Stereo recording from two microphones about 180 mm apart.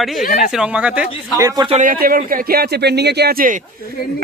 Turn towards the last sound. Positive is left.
turn(degrees=-50)  # may be behind; listen again after turning